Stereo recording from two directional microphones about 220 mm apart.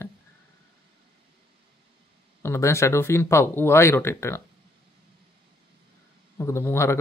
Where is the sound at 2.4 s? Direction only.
10° left (ahead or behind).